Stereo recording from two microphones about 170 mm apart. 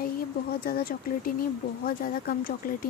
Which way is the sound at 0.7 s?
60° left (ahead or behind).